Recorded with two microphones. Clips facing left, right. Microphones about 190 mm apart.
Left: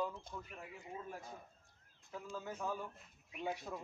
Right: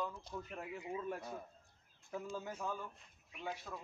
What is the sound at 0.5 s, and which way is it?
Speech, 70° right (ahead or behind).